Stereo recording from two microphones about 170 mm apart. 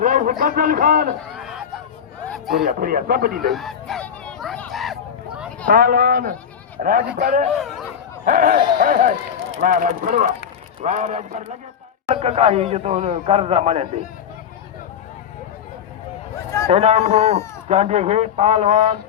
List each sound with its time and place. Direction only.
0.0 s a man's voice: 50° right (ahead or behind)
1.3 s a sound: 5° right (ahead or behind)
2.6 s speech: 55° right (ahead or behind)
3.4 s a sound: centre (ahead or behind)
5.6 s speech: 60° right (ahead or behind); by 14.0 s 40° right (ahead or behind)
16.6 s speech: 40° right (ahead or behind)